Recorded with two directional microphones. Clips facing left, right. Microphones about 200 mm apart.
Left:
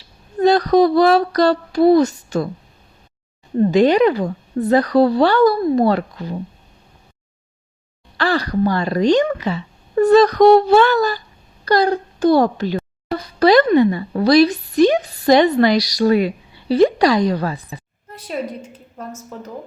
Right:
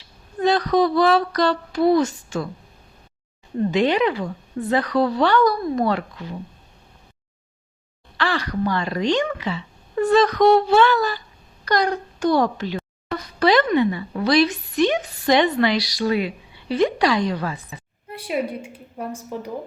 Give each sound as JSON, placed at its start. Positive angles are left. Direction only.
{"t": 0.3, "sound": "a woman's voice", "side_deg": 40}
{"t": 3.6, "sound": "a woman's voice", "side_deg": 40}
{"t": 8.2, "sound": "a woman's voice", "side_deg": 35}
{"t": 18.1, "sound": "a woman's voice", "side_deg": -10}